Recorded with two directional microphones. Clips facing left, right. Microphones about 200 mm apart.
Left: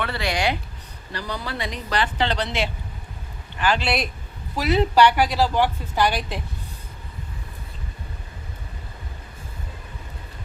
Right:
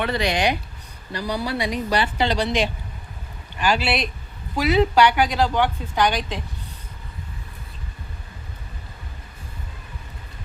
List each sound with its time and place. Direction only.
0.0 s a woman's voice: 20° right (ahead or behind); by 6.4 s 5° left (ahead or behind)